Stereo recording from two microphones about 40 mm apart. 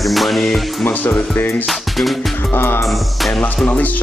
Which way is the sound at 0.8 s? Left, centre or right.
Left.